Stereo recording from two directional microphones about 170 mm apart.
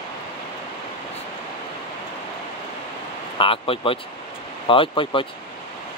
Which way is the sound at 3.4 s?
30° left (ahead or behind).